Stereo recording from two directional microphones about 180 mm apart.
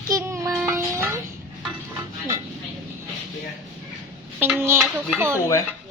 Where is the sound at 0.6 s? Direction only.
15° right (ahead or behind).